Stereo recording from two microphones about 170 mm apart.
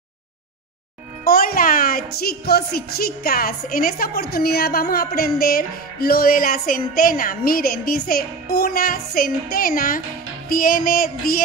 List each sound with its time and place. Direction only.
1.2 s a woman's voice: 60° left (ahead or behind)